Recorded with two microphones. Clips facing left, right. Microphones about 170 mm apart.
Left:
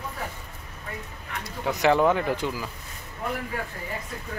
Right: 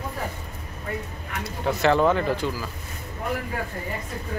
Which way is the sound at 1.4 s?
15° left (ahead or behind).